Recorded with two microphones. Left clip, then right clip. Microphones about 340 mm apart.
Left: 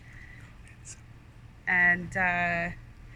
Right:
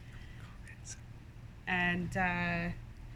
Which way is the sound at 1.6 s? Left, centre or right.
Centre.